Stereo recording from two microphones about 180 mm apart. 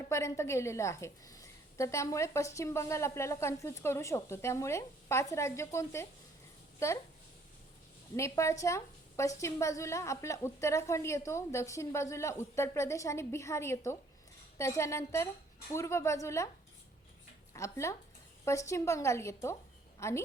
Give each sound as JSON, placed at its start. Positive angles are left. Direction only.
{"t": 0.1, "sound": "a woman's voice", "side_deg": 15}
{"t": 8.1, "sound": "a woman's voice", "side_deg": 15}
{"t": 17.5, "sound": "a woman's voice", "side_deg": 15}